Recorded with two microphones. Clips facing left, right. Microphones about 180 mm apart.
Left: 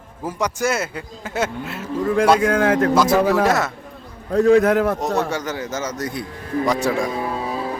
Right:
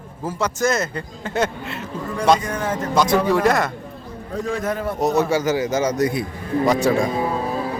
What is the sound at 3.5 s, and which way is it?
Speech, 5° left (ahead or behind).